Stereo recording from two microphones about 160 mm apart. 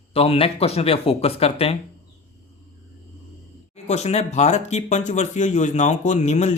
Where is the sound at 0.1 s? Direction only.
35° left (ahead or behind).